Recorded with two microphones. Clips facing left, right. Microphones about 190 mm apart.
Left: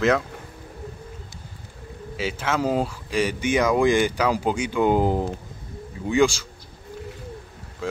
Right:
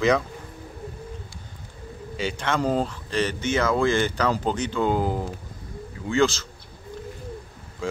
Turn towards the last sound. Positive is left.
turn(degrees=15)  # may be behind; listen again after turning